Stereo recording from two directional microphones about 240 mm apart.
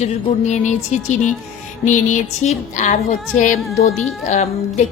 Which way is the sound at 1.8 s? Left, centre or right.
Left.